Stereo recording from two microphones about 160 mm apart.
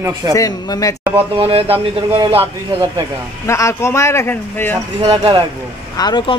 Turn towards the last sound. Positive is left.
turn(degrees=25)  # may be behind; listen again after turning